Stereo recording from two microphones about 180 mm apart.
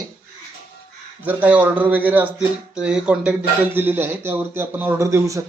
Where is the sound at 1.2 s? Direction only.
10° right (ahead or behind).